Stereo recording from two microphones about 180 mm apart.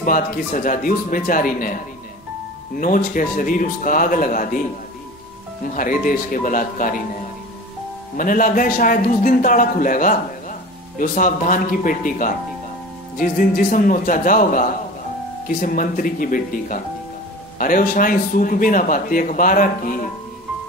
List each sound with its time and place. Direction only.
0.0 s speech: 50° left (ahead or behind)
2.8 s speech: 50° left (ahead or behind)
5.8 s speech: 50° left (ahead or behind)
8.2 s speech: 50° left (ahead or behind)